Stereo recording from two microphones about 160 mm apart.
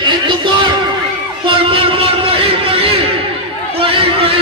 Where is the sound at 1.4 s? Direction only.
35° right (ahead or behind).